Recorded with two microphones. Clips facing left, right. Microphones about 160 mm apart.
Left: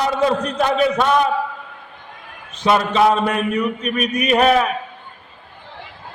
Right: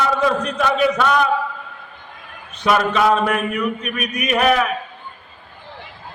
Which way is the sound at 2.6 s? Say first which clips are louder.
Left 1 dB; 25° left (ahead or behind).